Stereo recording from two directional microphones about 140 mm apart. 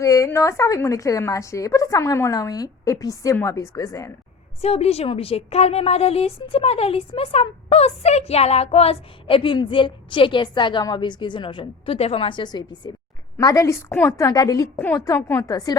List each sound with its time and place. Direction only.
0.0 s a woman's voice: 20° left (ahead or behind)
4.6 s a woman's voice: 45° left (ahead or behind); by 15.7 s 25° left (ahead or behind)